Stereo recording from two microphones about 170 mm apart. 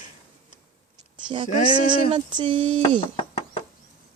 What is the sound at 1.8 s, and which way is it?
Speech, 25° right (ahead or behind).